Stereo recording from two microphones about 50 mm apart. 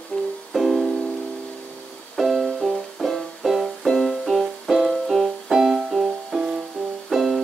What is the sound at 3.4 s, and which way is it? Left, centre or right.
Music, centre.